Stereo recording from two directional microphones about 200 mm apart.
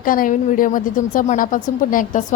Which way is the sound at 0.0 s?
45° left (ahead or behind).